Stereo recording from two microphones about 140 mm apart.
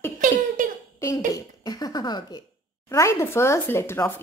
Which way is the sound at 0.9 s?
20° left (ahead or behind).